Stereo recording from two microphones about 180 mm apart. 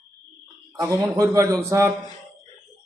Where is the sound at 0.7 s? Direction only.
15° right (ahead or behind).